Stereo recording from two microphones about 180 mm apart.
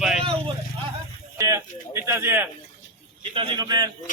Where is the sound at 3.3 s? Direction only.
25° right (ahead or behind).